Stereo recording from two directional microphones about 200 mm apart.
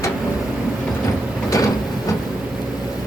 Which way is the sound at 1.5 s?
15° left (ahead or behind).